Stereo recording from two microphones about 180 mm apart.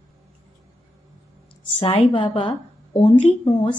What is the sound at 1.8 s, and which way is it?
A woman's voice, 30° left (ahead or behind).